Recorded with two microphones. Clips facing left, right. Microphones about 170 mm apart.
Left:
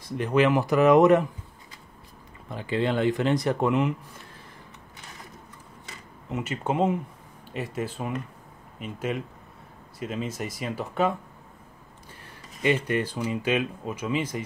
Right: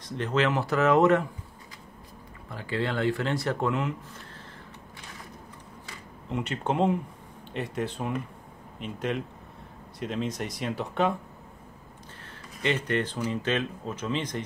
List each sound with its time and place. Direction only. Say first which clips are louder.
0.0 s speech: left 4 dB; 15° left (ahead or behind)
2.5 s speech: left 4 dB; 20° left (ahead or behind)
6.2 s speech: even; 5° left (ahead or behind)
12.6 s speech: left 3 dB; 10° left (ahead or behind)